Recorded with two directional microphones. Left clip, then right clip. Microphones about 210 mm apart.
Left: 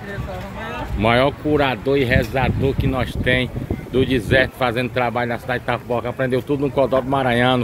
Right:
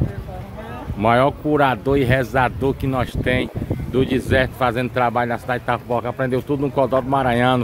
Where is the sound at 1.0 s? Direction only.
10° right (ahead or behind).